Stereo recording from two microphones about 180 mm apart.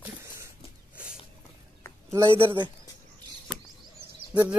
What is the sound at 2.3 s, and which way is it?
Speech, 30° right (ahead or behind).